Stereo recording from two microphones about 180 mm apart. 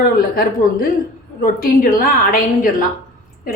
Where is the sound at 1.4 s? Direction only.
55° left (ahead or behind).